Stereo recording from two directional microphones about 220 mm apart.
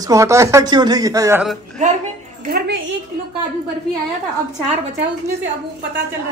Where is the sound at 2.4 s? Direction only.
45° right (ahead or behind).